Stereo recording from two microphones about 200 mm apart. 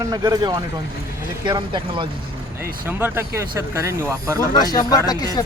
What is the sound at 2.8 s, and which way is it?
Speech, 10° right (ahead or behind).